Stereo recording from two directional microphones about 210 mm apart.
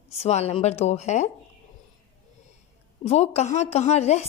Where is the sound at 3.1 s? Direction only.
30° left (ahead or behind).